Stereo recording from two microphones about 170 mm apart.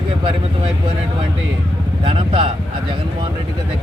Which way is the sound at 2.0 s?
35° right (ahead or behind).